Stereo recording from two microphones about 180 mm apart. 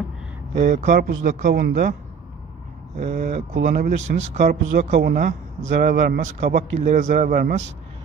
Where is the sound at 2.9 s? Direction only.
50° right (ahead or behind).